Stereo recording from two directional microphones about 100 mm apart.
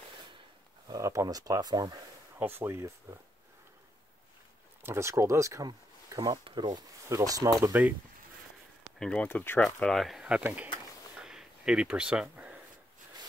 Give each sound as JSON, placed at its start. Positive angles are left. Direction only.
{"t": 0.8, "sound": "speech", "side_deg": -35}
{"t": 2.3, "sound": "speech", "side_deg": -25}
{"t": 4.8, "sound": "speech", "side_deg": -25}
{"t": 5.7, "sound": "speech", "side_deg": -40}
{"t": 7.1, "sound": "speech", "side_deg": -35}
{"t": 7.7, "sound": "speech", "side_deg": -20}
{"t": 9.0, "sound": "speech", "side_deg": 10}
{"t": 9.8, "sound": "speech", "side_deg": 5}
{"t": 10.2, "sound": "speech", "side_deg": -10}
{"t": 11.1, "sound": "a sound", "side_deg": -5}